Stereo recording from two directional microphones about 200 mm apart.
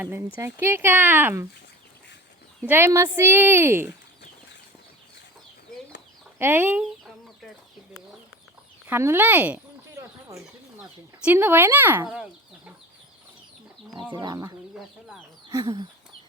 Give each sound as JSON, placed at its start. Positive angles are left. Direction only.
{"t": 0.3, "sound": "speech", "side_deg": -10}
{"t": 2.6, "sound": "speech", "side_deg": -10}
{"t": 6.4, "sound": "chicken", "side_deg": -10}
{"t": 8.9, "sound": "speech", "side_deg": -10}
{"t": 10.8, "sound": "speech", "side_deg": -5}
{"t": 14.1, "sound": "speech", "side_deg": -20}